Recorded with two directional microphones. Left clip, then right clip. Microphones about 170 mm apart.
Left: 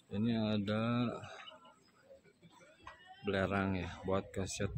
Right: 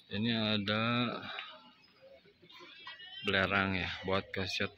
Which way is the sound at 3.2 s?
5° left (ahead or behind).